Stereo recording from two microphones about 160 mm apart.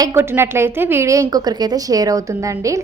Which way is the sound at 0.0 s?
15° right (ahead or behind).